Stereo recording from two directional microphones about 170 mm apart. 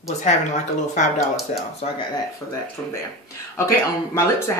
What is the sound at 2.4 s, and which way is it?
Speech, 15° left (ahead or behind).